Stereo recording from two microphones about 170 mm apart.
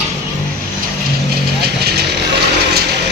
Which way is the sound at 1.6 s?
70° right (ahead or behind).